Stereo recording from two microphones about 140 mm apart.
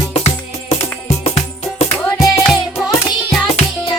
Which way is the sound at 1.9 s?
15° left (ahead or behind).